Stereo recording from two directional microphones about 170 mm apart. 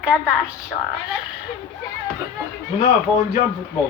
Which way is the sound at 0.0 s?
5° right (ahead or behind).